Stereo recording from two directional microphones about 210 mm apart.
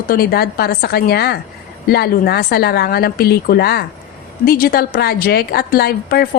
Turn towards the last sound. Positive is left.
turn(degrees=45)  # may be behind; listen again after turning